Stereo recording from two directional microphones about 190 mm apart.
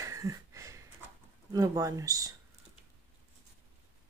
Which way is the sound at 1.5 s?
20° right (ahead or behind).